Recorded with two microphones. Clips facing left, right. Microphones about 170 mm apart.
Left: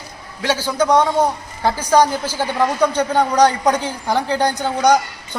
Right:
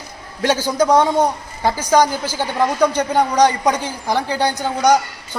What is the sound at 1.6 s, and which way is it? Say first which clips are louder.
A man's voice: even; 10° right (ahead or behind).